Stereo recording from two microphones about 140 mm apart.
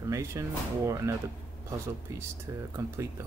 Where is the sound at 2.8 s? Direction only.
20° right (ahead or behind).